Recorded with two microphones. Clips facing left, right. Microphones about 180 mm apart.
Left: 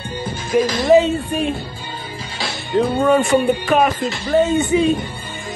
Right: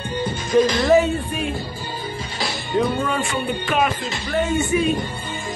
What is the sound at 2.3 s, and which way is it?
Music, centre (ahead or behind).